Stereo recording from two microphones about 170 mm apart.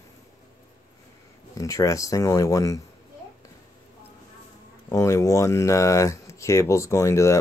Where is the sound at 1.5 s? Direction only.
20° left (ahead or behind).